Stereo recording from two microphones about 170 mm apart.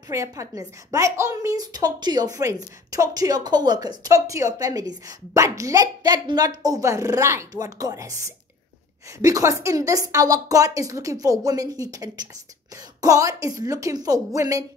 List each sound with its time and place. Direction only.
0.1 s a woman's voice: 20° right (ahead or behind)